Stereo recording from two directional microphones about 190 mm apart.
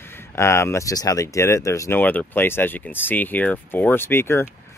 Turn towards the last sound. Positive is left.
turn(degrees=10)  # may be behind; listen again after turning